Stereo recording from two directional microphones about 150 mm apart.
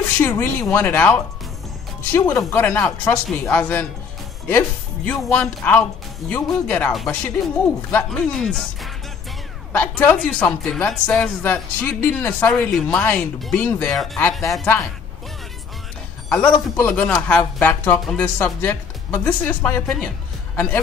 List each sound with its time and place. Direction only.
0.2 s speech: 15° left (ahead or behind)
6.9 s speech: centre (ahead or behind)
16.3 s a man's voice: 10° left (ahead or behind)